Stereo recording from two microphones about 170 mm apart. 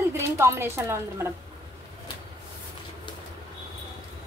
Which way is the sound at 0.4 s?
15° right (ahead or behind).